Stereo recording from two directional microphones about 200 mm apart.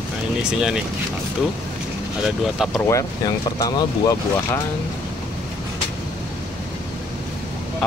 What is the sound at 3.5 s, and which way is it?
Speech, 20° left (ahead or behind).